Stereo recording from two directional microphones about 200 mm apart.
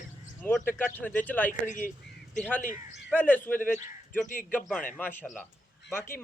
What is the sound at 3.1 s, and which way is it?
Speech, 10° left (ahead or behind).